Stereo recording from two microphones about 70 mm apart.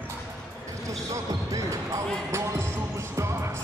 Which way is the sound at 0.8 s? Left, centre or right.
Right.